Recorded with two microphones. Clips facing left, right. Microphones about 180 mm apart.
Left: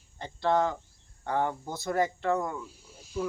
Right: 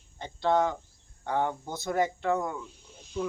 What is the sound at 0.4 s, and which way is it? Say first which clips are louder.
Speech: right 1 dB; 20° right (ahead or behind).